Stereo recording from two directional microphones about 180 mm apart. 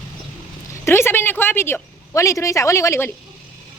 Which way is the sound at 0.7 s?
15° left (ahead or behind).